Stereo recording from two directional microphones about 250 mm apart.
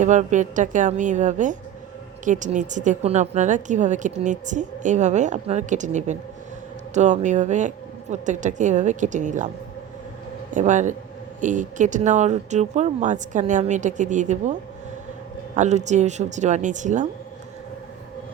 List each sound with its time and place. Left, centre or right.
0.0 s a woman's voice: right
10.5 s a woman's voice: right
15.5 s a woman's voice: right